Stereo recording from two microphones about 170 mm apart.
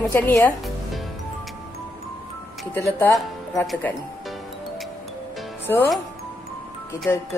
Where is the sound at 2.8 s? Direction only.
15° left (ahead or behind).